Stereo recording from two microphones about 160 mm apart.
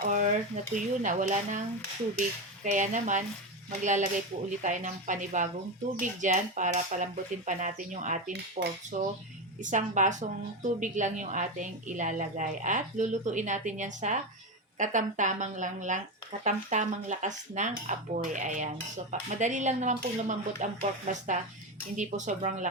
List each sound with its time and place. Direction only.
0.0 s a woman's voice: 55° right (ahead or behind)
2.6 s a woman's voice: 50° right (ahead or behind)
8.3 s dishes: 80° right
8.9 s a woman's voice: 55° right (ahead or behind)
21.9 s a woman's voice: 50° right (ahead or behind)